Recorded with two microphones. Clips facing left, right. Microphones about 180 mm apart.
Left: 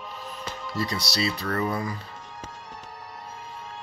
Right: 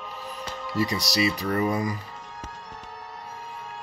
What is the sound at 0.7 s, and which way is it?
Speech, 15° right (ahead or behind).